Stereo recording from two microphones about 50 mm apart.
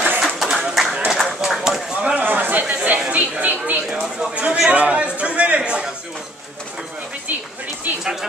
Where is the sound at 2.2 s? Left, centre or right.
Right.